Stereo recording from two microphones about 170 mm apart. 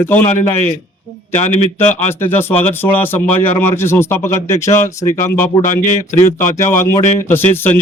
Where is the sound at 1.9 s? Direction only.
15° left (ahead or behind).